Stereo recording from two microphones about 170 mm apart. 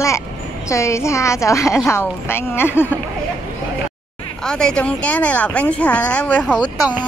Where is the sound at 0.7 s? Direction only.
15° left (ahead or behind).